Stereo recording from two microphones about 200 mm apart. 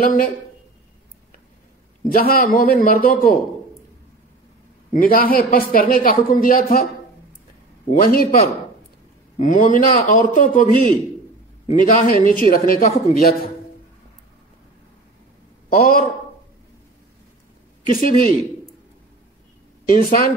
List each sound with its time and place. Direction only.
0.0 s speech: 45° left (ahead or behind)
2.0 s speech: 45° left (ahead or behind)
4.9 s speech: 45° left (ahead or behind)
8.0 s speech: 45° left (ahead or behind)
9.4 s a man's voice: 40° left (ahead or behind)
15.7 s speech: 45° left (ahead or behind)
17.8 s speech: 45° left (ahead or behind)
19.9 s speech: 45° left (ahead or behind)